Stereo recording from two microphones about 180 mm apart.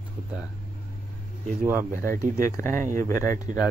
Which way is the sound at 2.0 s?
50° right (ahead or behind).